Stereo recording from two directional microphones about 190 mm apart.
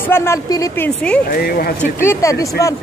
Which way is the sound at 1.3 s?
50° left (ahead or behind).